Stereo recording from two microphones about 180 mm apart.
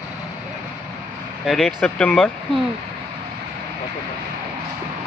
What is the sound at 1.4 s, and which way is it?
Speech, centre (ahead or behind).